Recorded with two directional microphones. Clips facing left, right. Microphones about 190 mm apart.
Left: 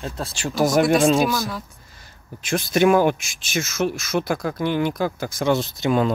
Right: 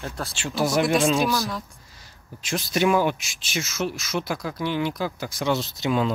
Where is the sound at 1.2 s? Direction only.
Centre (ahead or behind).